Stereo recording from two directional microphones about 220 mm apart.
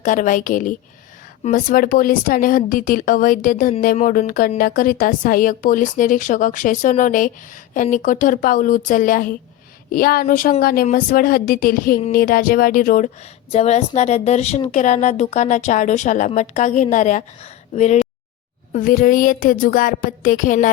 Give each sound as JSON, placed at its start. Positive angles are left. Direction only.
{"t": 0.0, "sound": "speech", "side_deg": 35}
{"t": 13.5, "sound": "speech", "side_deg": 30}